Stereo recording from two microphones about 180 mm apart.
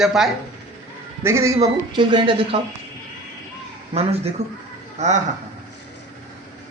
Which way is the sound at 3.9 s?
35° right (ahead or behind).